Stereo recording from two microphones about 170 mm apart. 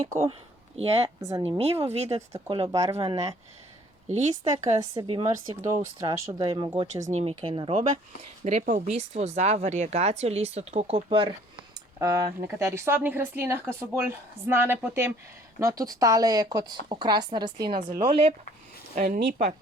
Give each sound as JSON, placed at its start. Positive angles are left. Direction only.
{"t": 0.0, "sound": "speech", "side_deg": -20}
{"t": 1.5, "sound": "speech", "side_deg": -35}
{"t": 4.8, "sound": "speech", "side_deg": -25}
{"t": 7.0, "sound": "speech", "side_deg": -40}
{"t": 8.4, "sound": "speech", "side_deg": -45}
{"t": 11.9, "sound": "a woman's voice", "side_deg": -20}
{"t": 18.9, "sound": "speech", "side_deg": -55}